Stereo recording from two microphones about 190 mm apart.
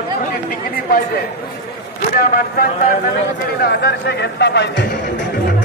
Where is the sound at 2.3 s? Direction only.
45° left (ahead or behind).